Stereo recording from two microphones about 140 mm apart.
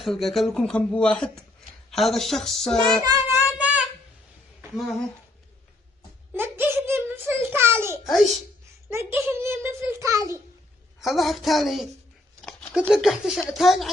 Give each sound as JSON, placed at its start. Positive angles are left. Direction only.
{"t": 0.0, "sound": "speech", "side_deg": 0}
{"t": 3.0, "sound": "a sound", "side_deg": -15}
{"t": 4.6, "sound": "speech", "side_deg": 0}
{"t": 6.3, "sound": "a sound", "side_deg": -15}
{"t": 8.8, "sound": "a child's voice", "side_deg": -20}
{"t": 11.0, "sound": "speech", "side_deg": 0}